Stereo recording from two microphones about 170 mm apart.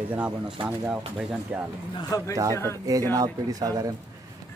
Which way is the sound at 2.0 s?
20° left (ahead or behind).